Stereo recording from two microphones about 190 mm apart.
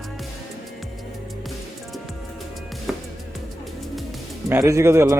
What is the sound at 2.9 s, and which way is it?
Music, 5° right (ahead or behind).